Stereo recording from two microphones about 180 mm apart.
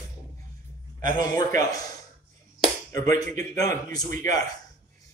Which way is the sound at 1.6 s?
20° left (ahead or behind).